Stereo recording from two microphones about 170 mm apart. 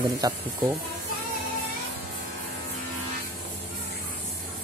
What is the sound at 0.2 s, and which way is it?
Speech, 20° right (ahead or behind).